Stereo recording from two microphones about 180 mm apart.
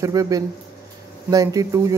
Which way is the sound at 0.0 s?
20° right (ahead or behind).